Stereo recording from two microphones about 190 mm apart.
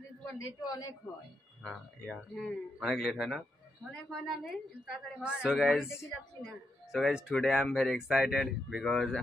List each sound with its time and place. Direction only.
0.7 s a woman's voice: 20° left (ahead or behind)
1.6 s speech: centre (ahead or behind)